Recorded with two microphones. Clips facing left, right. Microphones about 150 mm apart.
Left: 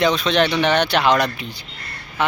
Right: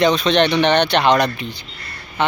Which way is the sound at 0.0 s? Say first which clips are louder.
Right 2 dB; 5° left (ahead or behind).